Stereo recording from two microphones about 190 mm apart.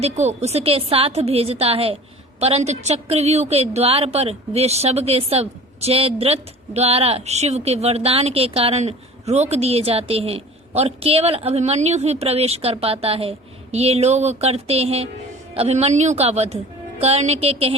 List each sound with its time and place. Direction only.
0.0 s a woman's voice: 35° right (ahead or behind)